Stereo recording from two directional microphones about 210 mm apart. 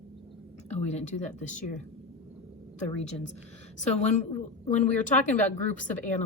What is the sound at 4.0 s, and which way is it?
Speech, 35° left (ahead or behind).